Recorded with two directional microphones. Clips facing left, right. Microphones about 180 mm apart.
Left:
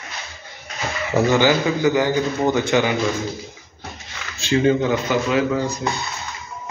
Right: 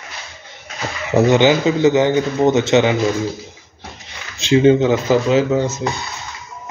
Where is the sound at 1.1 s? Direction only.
20° right (ahead or behind).